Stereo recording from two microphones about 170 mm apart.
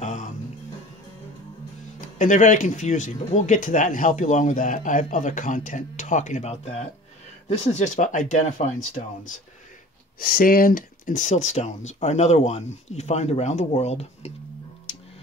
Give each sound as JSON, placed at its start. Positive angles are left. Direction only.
{"t": 0.0, "sound": "music", "side_deg": 45}
{"t": 2.0, "sound": "speech", "side_deg": 50}